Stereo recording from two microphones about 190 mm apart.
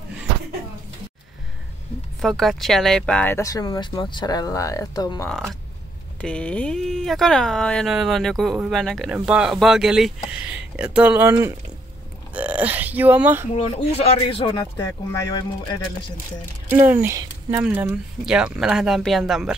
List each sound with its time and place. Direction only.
2.2 s speech: centre (ahead or behind); by 5.3 s 20° left (ahead or behind)
6.2 s speech: 5° left (ahead or behind)
13.6 s speech: 35° left (ahead or behind)
16.6 s speech: 10° right (ahead or behind)